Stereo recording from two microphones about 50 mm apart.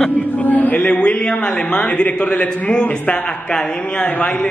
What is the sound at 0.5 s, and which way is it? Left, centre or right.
A man's voice, left.